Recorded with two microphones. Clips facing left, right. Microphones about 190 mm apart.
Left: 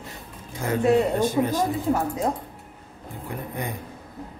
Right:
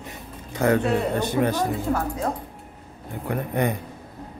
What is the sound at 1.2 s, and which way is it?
Speech, 70° right (ahead or behind).